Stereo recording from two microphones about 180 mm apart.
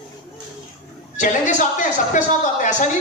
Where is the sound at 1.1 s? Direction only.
45° left (ahead or behind).